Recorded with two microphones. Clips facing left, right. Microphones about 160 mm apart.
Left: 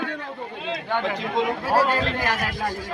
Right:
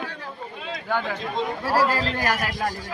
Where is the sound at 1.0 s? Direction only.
85° left.